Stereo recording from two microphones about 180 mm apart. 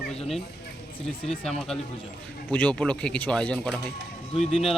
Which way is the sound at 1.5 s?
Centre (ahead or behind).